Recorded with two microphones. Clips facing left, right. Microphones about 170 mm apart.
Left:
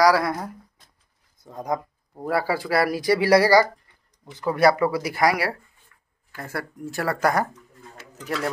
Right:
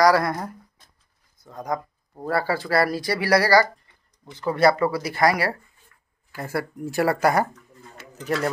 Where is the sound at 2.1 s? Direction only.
10° left (ahead or behind).